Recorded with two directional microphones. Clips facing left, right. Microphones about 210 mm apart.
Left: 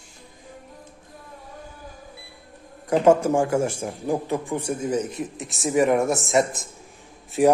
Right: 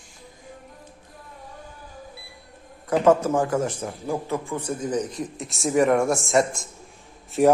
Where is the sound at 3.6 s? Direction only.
10° left (ahead or behind).